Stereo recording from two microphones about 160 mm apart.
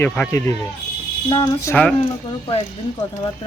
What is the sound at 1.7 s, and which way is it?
Speech, 20° left (ahead or behind).